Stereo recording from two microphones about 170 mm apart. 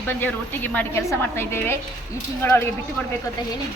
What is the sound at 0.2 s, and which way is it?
A woman's voice, 10° left (ahead or behind).